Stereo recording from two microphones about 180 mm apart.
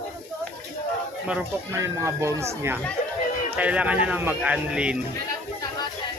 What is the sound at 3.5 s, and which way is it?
Speech, 5° right (ahead or behind).